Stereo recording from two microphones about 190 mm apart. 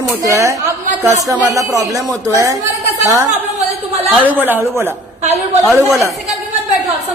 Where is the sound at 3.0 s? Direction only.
15° right (ahead or behind).